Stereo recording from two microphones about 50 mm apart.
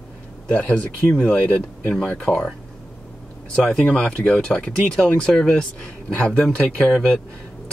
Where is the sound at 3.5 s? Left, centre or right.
Centre.